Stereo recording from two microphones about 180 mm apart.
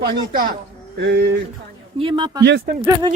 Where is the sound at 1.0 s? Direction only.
70° right (ahead or behind).